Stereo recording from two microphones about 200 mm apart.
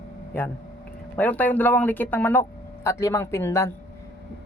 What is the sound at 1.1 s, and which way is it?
Speech, 10° left (ahead or behind).